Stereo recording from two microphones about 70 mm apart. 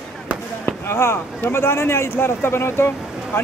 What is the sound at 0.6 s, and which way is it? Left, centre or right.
Speech, left.